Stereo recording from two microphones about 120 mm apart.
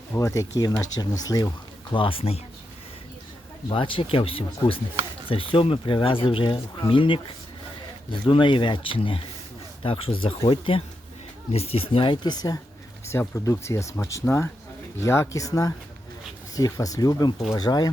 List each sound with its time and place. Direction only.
0.1 s speech: 25° left (ahead or behind)
1.9 s speech: 45° left (ahead or behind)
3.7 s speech: 45° left (ahead or behind)
13.1 s speech: 25° left (ahead or behind)